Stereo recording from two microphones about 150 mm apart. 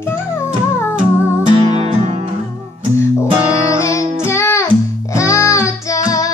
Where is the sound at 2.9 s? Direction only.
20° left (ahead or behind).